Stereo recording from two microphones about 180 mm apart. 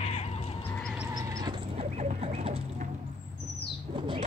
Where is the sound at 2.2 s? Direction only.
30° right (ahead or behind).